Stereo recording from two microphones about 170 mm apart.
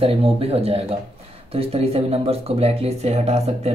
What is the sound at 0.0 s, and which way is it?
Speech, 35° right (ahead or behind).